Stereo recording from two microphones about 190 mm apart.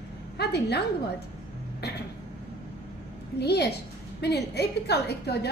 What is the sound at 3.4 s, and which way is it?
A woman's voice, 60° left (ahead or behind).